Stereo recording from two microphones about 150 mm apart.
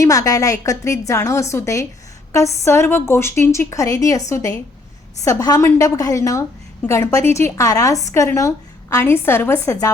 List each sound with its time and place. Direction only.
0.0 s a woman's voice: 20° left (ahead or behind)